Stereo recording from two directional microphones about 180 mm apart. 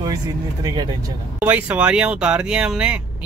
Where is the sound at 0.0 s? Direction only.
20° right (ahead or behind).